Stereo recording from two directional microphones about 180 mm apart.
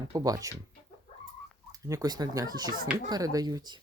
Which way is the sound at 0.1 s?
20° right (ahead or behind).